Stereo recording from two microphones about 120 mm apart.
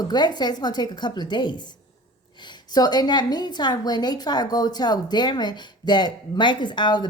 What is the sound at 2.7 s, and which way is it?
A woman's voice, 35° left (ahead or behind).